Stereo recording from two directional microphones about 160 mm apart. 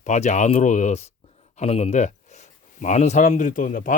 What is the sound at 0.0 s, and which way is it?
Speech, 45° left (ahead or behind).